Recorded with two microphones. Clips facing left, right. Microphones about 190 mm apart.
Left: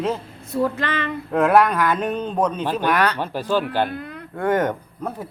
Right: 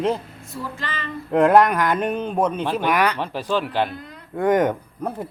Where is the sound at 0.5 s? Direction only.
60° left (ahead or behind).